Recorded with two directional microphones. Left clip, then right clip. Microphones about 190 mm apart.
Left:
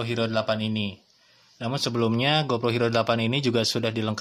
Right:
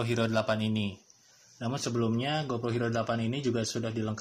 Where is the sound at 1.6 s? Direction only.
20° left (ahead or behind).